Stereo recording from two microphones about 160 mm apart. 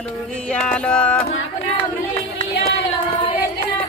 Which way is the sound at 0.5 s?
10° left (ahead or behind).